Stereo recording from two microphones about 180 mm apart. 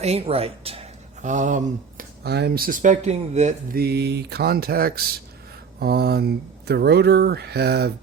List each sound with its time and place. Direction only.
0.0 s speech: 35° right (ahead or behind)
2.2 s speech: 65° right (ahead or behind); by 3.8 s 40° right (ahead or behind)
3.8 s speech: 65° right (ahead or behind)